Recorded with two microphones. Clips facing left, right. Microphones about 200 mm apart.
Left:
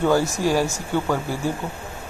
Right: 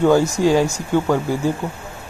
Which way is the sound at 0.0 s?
20° right (ahead or behind).